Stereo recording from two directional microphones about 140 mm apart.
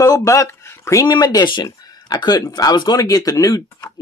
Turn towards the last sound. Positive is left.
turn(degrees=25)  # may be behind; listen again after turning